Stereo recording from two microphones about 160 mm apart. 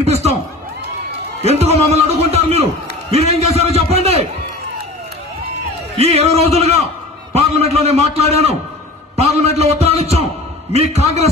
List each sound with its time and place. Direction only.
0.0 s a sound: 40° right (ahead or behind)
1.4 s a man's voice: 40° right (ahead or behind)
5.9 s a man's voice: 40° right (ahead or behind)